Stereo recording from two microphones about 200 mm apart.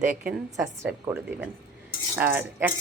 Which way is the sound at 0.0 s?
45° right (ahead or behind).